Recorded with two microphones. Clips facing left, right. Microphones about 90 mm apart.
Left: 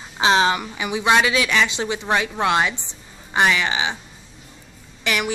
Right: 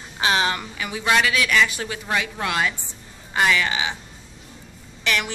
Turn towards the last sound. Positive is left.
turn(degrees=10)  # may be behind; listen again after turning